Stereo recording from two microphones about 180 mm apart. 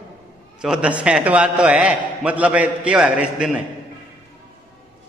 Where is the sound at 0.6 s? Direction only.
5° right (ahead or behind).